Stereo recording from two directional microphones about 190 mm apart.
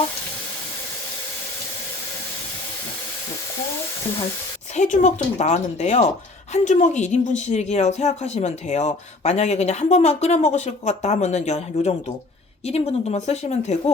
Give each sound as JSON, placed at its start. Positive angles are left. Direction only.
{"t": 4.7, "sound": "speech", "side_deg": 40}